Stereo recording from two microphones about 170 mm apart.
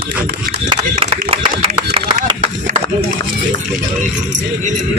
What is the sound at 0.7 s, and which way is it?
Speech, 30° right (ahead or behind).